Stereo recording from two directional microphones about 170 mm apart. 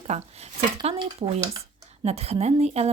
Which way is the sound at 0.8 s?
25° right (ahead or behind).